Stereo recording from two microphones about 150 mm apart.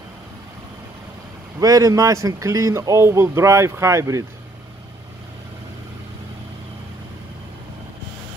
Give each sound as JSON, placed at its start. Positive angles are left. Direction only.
{"t": 1.6, "sound": "speech", "side_deg": -25}